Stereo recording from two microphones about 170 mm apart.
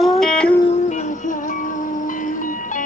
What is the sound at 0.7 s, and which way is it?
Music, 45° left (ahead or behind).